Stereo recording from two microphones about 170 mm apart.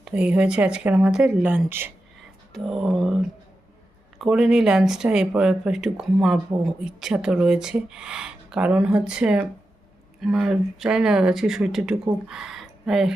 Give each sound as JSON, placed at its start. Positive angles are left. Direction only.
{"t": 0.0, "sound": "speech", "side_deg": -5}
{"t": 2.5, "sound": "speech", "side_deg": 0}
{"t": 4.2, "sound": "speech", "side_deg": -5}